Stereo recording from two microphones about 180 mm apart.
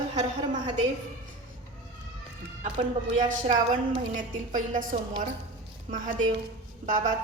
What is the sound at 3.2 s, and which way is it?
A woman's voice, 45° right (ahead or behind).